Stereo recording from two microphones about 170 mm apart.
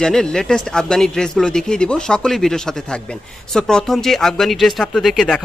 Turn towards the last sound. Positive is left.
turn(degrees=0)  # may be behind; listen again after turning